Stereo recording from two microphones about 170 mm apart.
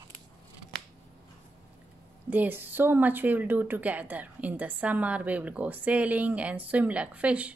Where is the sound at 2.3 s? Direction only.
10° right (ahead or behind).